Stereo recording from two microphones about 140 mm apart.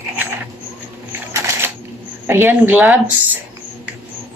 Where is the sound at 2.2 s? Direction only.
15° right (ahead or behind).